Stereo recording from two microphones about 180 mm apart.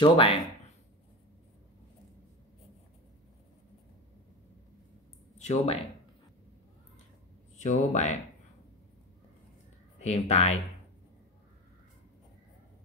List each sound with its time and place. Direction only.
0.0 s speech: 30° left (ahead or behind)
5.4 s speech: 40° left (ahead or behind)
7.5 s speech: 40° left (ahead or behind)
9.9 s speech: 35° left (ahead or behind)